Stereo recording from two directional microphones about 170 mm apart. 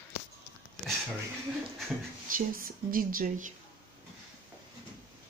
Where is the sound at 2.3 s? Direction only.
55° right (ahead or behind).